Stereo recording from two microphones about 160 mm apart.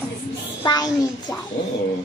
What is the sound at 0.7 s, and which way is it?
Speech, 30° left (ahead or behind).